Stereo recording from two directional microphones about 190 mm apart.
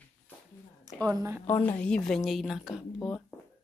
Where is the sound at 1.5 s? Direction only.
10° left (ahead or behind).